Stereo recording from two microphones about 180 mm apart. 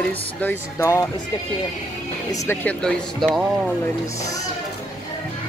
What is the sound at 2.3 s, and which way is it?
Speech, 15° left (ahead or behind).